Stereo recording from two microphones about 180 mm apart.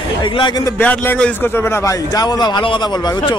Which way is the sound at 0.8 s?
10° left (ahead or behind).